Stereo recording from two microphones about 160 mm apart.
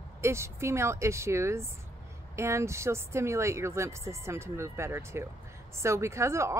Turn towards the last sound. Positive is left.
turn(degrees=-20)  # may be behind; listen again after turning